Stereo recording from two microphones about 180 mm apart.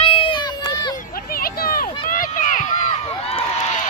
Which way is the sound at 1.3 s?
55° left (ahead or behind).